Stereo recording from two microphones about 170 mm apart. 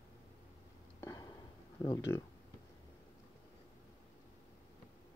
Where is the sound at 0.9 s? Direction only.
15° left (ahead or behind).